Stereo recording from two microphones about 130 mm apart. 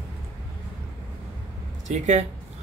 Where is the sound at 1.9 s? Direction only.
65° right (ahead or behind).